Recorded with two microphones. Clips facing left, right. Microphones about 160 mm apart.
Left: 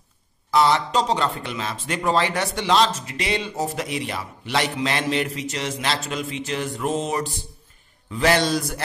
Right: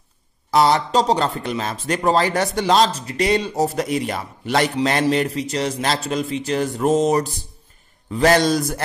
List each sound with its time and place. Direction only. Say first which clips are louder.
0.5 s a man's voice: right 3 dB; 40° right (ahead or behind)